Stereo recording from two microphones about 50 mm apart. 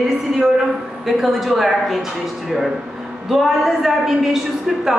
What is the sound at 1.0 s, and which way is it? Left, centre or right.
A woman's voice, centre.